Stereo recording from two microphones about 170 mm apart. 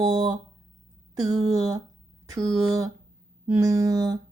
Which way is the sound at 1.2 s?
20° right (ahead or behind).